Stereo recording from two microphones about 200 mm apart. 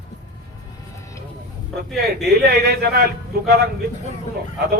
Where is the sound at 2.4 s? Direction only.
50° right (ahead or behind).